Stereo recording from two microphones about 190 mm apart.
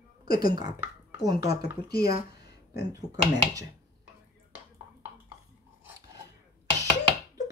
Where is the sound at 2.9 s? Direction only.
20° right (ahead or behind).